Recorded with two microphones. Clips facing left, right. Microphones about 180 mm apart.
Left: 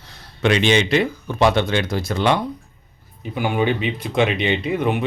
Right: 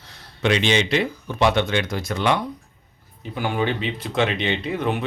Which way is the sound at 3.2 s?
15° left (ahead or behind).